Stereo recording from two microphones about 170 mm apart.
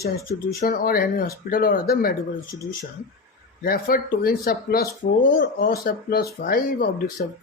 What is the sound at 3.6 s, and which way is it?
Speech, 55° left (ahead or behind).